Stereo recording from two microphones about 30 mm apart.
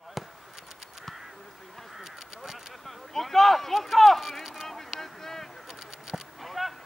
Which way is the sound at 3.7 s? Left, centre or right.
Centre.